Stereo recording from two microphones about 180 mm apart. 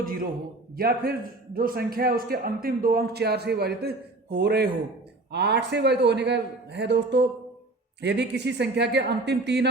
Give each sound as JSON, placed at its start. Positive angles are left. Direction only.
{"t": 0.0, "sound": "a man's voice", "side_deg": -50}